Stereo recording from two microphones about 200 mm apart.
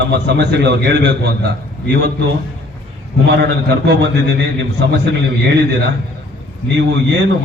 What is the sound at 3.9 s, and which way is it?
Speech, 60° right (ahead or behind).